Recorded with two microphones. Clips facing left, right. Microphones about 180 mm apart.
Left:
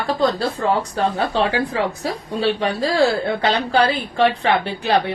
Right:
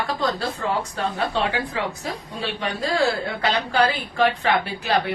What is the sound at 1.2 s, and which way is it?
A woman's voice, 35° left (ahead or behind).